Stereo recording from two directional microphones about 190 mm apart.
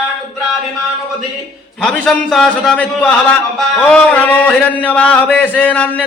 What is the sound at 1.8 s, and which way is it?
A man's voice, 5° left (ahead or behind).